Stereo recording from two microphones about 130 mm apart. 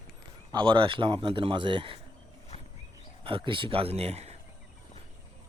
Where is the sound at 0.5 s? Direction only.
40° right (ahead or behind).